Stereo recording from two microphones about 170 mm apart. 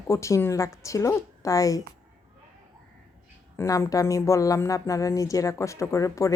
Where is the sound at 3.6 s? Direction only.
15° left (ahead or behind).